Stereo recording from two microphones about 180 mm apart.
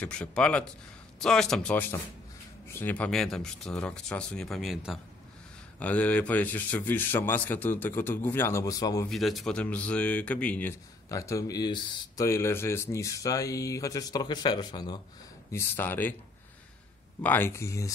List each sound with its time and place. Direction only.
0.0 s speech: 5° left (ahead or behind)
9.1 s speech: centre (ahead or behind); by 15.0 s 25° left (ahead or behind)
15.5 s speech: 10° left (ahead or behind)
17.2 s speech: 10° left (ahead or behind)